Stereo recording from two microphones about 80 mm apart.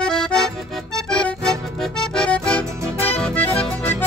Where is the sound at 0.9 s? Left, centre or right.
Centre.